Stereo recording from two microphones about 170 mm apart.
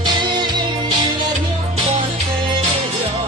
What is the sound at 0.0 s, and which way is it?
Music, 25° right (ahead or behind).